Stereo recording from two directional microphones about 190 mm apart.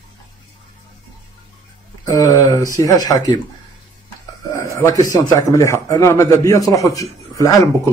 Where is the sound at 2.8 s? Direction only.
20° left (ahead or behind).